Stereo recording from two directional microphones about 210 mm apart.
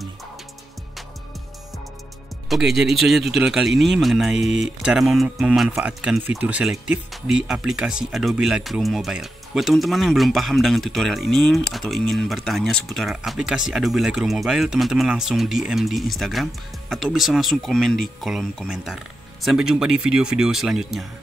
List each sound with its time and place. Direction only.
2.5 s speech: centre (ahead or behind)